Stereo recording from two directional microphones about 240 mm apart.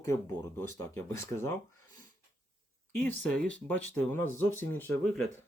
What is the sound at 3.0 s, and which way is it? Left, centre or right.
Speech, centre.